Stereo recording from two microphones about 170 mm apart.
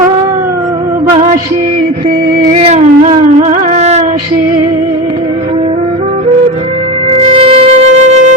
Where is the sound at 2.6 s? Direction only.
40° right (ahead or behind).